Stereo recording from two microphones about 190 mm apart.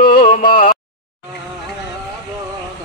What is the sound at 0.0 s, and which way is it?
Music, 45° left (ahead or behind).